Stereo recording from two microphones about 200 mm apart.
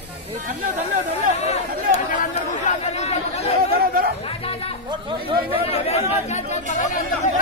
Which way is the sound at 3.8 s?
50° right (ahead or behind).